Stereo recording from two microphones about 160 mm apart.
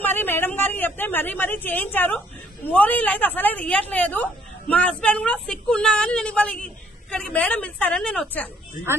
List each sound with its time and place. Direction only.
0.0 s speech: 10° left (ahead or behind)
8.8 s speech: 60° left (ahead or behind)